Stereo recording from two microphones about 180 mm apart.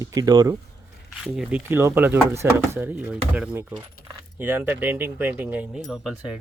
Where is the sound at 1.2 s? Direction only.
5° right (ahead or behind).